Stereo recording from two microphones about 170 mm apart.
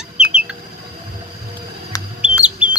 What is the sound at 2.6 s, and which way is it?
Bird, 10° right (ahead or behind).